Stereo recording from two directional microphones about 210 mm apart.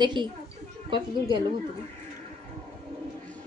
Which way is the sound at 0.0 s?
20° right (ahead or behind).